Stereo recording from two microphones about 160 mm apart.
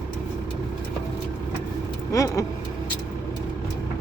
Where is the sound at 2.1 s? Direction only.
20° left (ahead or behind).